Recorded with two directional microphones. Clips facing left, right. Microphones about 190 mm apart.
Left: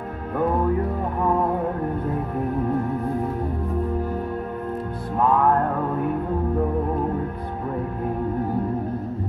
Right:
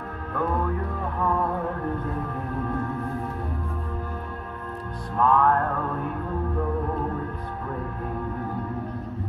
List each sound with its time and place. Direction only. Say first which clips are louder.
1.2 s music: left 3 dB; 20° left (ahead or behind)
5.1 s music: left 2 dB; 15° left (ahead or behind)